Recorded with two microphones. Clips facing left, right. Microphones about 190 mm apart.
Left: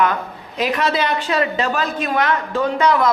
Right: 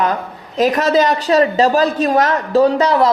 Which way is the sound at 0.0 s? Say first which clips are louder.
Right 1 dB; 40° right (ahead or behind).